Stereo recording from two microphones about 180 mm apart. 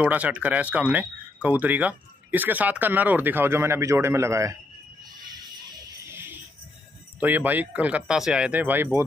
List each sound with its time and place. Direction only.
0.0 s speech: 5° right (ahead or behind)
5.3 s music: 20° right (ahead or behind)
6.1 s music: 10° right (ahead or behind)
7.2 s speech: 10° right (ahead or behind)